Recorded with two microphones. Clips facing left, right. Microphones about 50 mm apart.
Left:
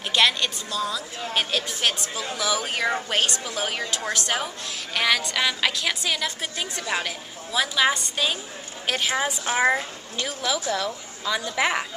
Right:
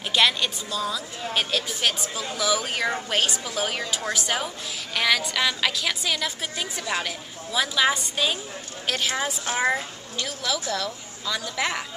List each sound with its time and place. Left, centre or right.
0.1 s a woman's voice: centre
8.8 s a woman's voice: centre